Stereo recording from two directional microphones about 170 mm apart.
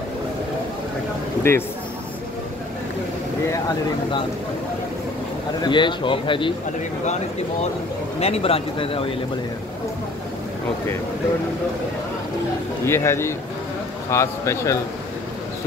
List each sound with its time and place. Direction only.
1.5 s speech: 15° left (ahead or behind)
5.6 s a man's voice: 25° left (ahead or behind)
8.2 s speech: 35° left (ahead or behind)
12.8 s speech: 15° left (ahead or behind)